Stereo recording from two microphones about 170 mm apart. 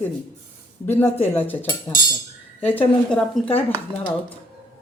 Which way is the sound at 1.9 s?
20° left (ahead or behind).